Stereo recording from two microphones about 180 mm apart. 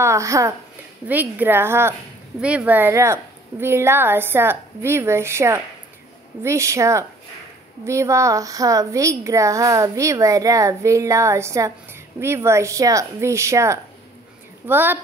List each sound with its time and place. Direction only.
0.0 s speech: 15° right (ahead or behind)